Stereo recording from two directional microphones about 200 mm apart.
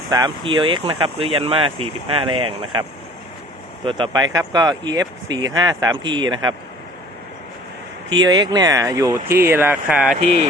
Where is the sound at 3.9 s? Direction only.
25° right (ahead or behind).